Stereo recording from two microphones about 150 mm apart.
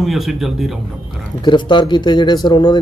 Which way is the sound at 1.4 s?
30° left (ahead or behind).